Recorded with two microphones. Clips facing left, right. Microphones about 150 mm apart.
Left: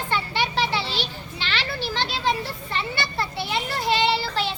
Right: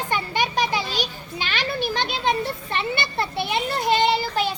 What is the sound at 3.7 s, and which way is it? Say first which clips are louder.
Child singing: right 2 dB; 20° right (ahead or behind).